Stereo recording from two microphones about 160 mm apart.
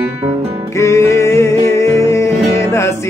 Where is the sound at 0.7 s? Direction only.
20° left (ahead or behind).